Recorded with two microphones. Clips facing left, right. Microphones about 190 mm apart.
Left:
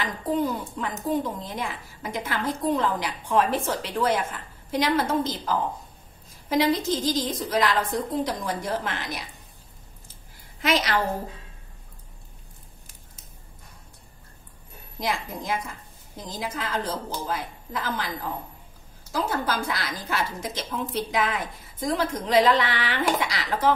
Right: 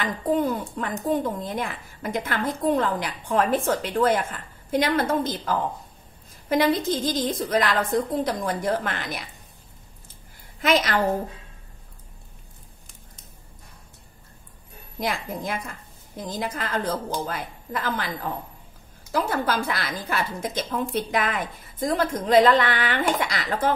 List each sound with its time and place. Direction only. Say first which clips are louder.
0.0 s a child's voice: right 2 dB; 55° right (ahead or behind)
10.6 s a woman's voice: right 2 dB; 50° right (ahead or behind)
15.0 s a woman's voice: right 1 dB; 55° right (ahead or behind)
19.1 s a woman's voice: right 2 dB; 55° right (ahead or behind)